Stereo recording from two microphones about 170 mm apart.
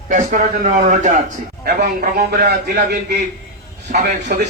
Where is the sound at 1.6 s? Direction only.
60° right (ahead or behind).